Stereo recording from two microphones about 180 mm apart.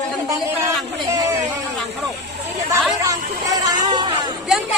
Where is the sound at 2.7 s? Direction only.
15° right (ahead or behind).